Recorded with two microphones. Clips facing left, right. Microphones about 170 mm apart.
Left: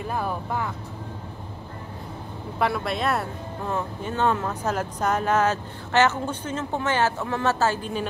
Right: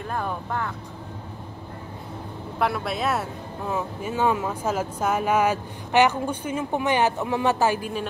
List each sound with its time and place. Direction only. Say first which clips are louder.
0.1 s speech: even; 5° left (ahead or behind)
2.6 s speech: even; centre (ahead or behind)